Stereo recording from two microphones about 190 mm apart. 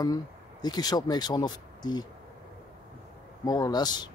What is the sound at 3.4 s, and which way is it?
Speech, 20° left (ahead or behind).